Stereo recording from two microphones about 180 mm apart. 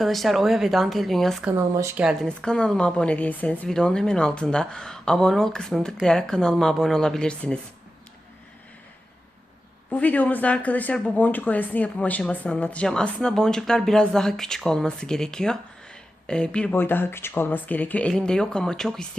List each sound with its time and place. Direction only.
0.0 s speech: centre (ahead or behind)
1.5 s speech: 15° right (ahead or behind)
2.0 s speech: 5° left (ahead or behind)
9.9 s speech: 10° left (ahead or behind)